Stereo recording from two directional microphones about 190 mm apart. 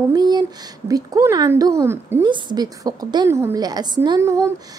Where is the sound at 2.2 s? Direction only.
25° right (ahead or behind).